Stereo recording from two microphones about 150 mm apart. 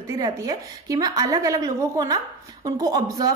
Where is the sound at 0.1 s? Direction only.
20° right (ahead or behind).